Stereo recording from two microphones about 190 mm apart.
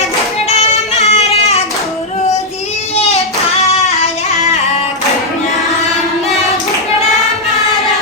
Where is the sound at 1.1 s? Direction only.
35° left (ahead or behind).